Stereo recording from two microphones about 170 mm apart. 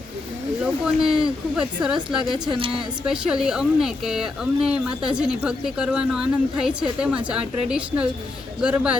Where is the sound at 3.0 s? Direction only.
5° right (ahead or behind).